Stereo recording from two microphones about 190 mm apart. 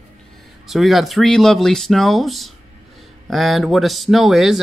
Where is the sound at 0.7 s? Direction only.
Centre (ahead or behind).